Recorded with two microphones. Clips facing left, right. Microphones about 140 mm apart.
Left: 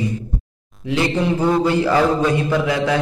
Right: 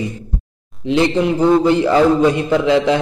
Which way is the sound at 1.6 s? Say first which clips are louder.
Right 4 dB; 20° right (ahead or behind).